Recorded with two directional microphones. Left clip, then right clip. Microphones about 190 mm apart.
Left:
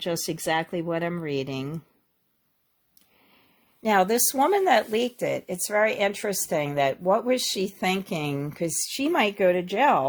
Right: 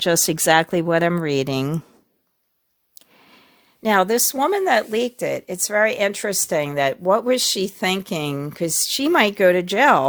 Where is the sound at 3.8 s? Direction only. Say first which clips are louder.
Right 4 dB; 30° right (ahead or behind).